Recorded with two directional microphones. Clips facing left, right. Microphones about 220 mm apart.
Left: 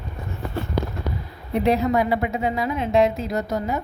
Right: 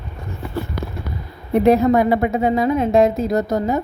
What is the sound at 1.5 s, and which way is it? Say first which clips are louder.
A woman's voice: right 6 dB; 50° right (ahead or behind).